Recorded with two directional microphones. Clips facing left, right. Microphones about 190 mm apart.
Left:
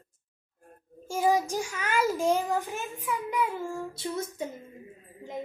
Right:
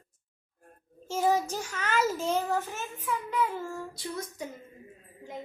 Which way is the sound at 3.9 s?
25° left (ahead or behind).